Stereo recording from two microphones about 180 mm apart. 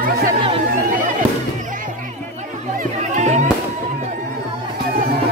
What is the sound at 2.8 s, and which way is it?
Music, 40° right (ahead or behind).